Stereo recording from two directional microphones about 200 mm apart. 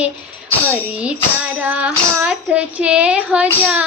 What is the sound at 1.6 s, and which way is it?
Tambourine, 5° right (ahead or behind).